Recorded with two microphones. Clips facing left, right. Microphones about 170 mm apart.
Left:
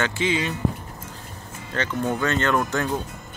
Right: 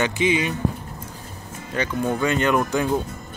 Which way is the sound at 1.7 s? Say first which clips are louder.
Right 2 dB; 10° right (ahead or behind).